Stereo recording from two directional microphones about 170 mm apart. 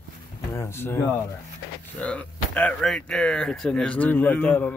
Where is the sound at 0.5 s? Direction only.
15° left (ahead or behind).